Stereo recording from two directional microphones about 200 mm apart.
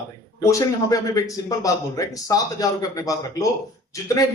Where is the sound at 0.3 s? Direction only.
15° left (ahead or behind).